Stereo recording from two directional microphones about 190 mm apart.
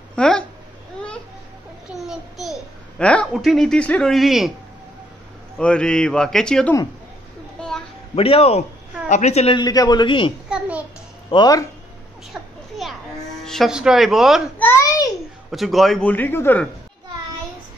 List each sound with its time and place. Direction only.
0.1 s a sound: 5° left (ahead or behind)
2.0 s a child's voice: centre (ahead or behind)
5.6 s speech: 5° left (ahead or behind)
7.6 s a sound: 5° left (ahead or behind)
8.1 s speech: 30° left (ahead or behind)
9.6 s a man's voice: 20° left (ahead or behind)
10.5 s a sound: 5° right (ahead or behind)
11.2 s a man's voice: 20° left (ahead or behind)
12.3 s children playing: centre (ahead or behind)
13.4 s speech: centre (ahead or behind)
14.6 s a sound: 15° left (ahead or behind)
15.5 s a man's voice: centre (ahead or behind)